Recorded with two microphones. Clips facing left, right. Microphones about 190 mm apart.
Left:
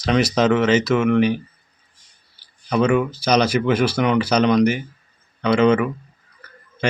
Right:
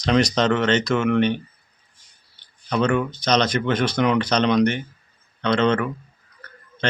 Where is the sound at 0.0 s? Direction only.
5° left (ahead or behind).